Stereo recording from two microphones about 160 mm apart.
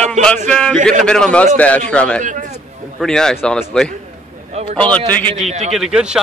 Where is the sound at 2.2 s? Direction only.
50° right (ahead or behind).